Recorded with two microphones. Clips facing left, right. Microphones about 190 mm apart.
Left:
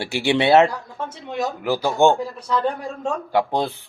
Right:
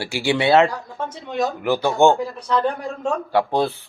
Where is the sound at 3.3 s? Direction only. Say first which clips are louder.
Right 1 dB; 15° left (ahead or behind).